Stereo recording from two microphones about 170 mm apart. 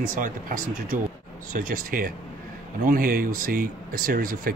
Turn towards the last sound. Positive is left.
turn(degrees=-60)  # may be behind; listen again after turning